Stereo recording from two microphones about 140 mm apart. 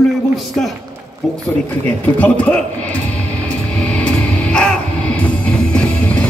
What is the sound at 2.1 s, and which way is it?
Speech, 10° left (ahead or behind).